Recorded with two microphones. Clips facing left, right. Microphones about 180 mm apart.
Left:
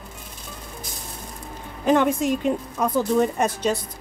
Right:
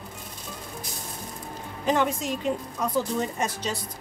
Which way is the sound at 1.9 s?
55° left (ahead or behind).